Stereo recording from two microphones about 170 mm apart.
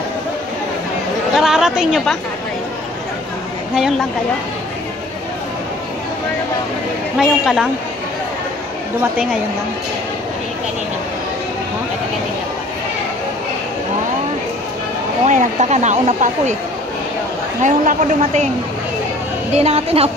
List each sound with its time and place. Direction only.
1.3 s chatter: centre (ahead or behind)
7.2 s a woman's voice: centre (ahead or behind)
15.2 s speech: 45° right (ahead or behind)
17.6 s speech: 45° right (ahead or behind)
19.5 s a woman's voice: 40° right (ahead or behind)